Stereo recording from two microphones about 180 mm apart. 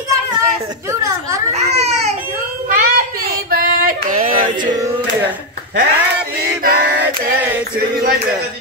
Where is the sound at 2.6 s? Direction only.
50° right (ahead or behind).